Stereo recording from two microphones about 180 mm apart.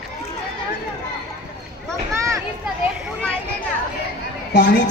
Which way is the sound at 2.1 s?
15° right (ahead or behind).